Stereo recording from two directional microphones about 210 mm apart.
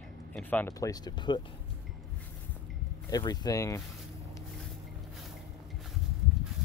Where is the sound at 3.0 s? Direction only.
20° left (ahead or behind).